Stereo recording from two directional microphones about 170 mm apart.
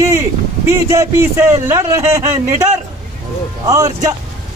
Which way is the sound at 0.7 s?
15° right (ahead or behind).